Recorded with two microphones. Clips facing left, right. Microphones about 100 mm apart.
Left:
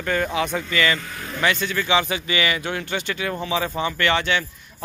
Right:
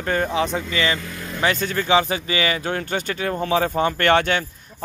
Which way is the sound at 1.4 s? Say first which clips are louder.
Right 1 dB; 40° right (ahead or behind).